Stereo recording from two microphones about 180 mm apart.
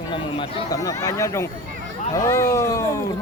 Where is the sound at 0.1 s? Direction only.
25° left (ahead or behind).